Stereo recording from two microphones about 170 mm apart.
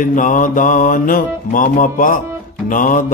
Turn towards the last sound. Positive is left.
turn(degrees=50)  # may be behind; listen again after turning